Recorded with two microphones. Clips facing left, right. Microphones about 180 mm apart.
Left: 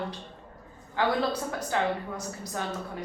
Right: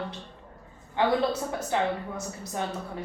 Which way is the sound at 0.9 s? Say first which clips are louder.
Right 2 dB; 25° right (ahead or behind).